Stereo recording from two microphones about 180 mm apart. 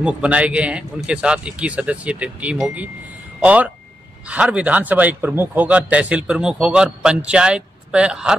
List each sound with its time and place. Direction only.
0.0 s a man's voice: 5° right (ahead or behind)